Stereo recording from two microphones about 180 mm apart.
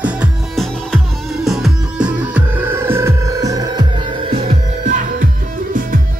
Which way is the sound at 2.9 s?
15° right (ahead or behind).